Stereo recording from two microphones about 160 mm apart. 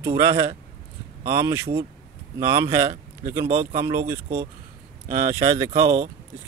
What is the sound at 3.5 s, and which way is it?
Speech, 40° right (ahead or behind).